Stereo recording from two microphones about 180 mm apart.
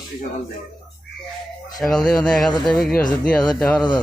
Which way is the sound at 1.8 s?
5° left (ahead or behind).